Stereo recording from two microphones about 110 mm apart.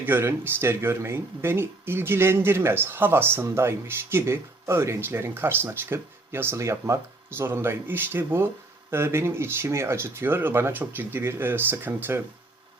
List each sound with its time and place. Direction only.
0.0 s speech: 20° right (ahead or behind)